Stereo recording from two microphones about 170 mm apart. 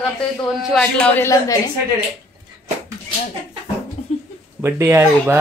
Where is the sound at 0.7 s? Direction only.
10° left (ahead or behind).